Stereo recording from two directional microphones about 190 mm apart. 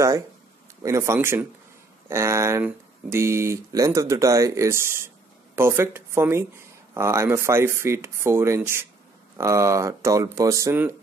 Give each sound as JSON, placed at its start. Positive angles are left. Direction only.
{"t": 0.8, "sound": "speech", "side_deg": -15}